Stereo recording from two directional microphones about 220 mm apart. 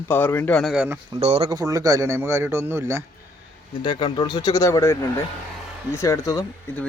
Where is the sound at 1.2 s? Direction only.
30° right (ahead or behind).